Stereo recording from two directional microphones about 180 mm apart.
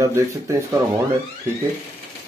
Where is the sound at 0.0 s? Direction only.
15° right (ahead or behind).